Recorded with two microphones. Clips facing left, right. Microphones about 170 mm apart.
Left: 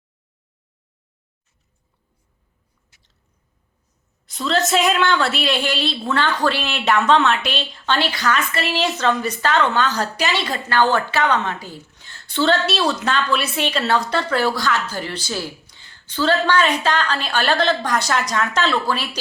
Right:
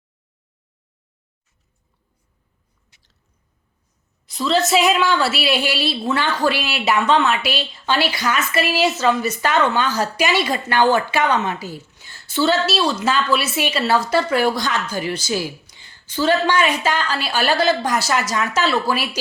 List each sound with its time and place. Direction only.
4.3 s a woman's voice: centre (ahead or behind)